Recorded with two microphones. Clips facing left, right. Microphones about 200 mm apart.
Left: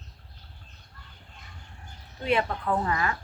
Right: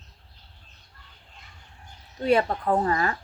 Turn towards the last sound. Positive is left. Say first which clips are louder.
# right 4 dB
turn(degrees=-35)  # may be behind; listen again after turning